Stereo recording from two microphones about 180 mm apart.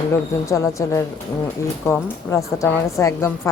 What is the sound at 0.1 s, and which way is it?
Speech, 15° left (ahead or behind).